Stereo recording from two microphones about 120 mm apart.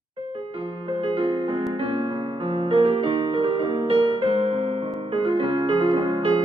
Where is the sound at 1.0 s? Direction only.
45° right (ahead or behind).